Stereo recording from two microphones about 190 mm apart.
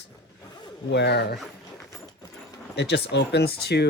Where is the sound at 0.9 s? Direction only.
65° left (ahead or behind).